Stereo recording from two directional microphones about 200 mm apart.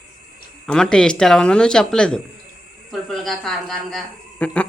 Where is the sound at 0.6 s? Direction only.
5° left (ahead or behind).